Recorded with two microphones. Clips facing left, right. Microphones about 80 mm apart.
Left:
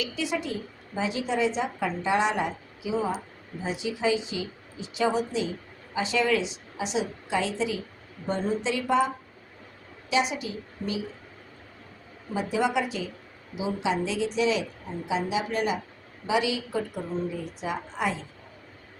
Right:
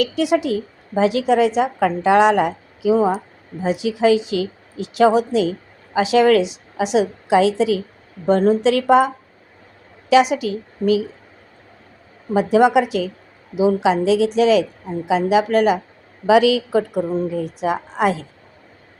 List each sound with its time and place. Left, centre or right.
0.0 s a woman's voice: right
12.3 s a woman's voice: right